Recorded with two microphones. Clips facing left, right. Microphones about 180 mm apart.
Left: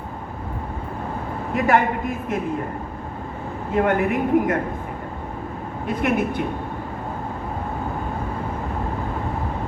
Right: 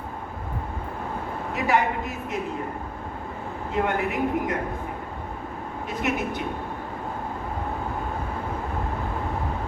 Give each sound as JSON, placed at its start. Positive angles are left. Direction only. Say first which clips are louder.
{"t": 1.5, "sound": "speech", "louder": "left 4 dB", "side_deg": 50}
{"t": 3.7, "sound": "speech", "louder": "left 6 dB", "side_deg": 50}
{"t": 5.9, "sound": "speech", "louder": "left 6 dB", "side_deg": 55}